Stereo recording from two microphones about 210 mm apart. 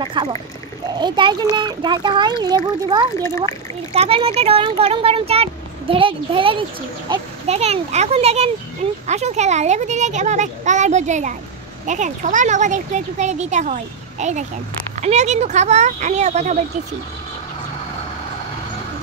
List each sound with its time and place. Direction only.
0.0 s speech: 25° right (ahead or behind)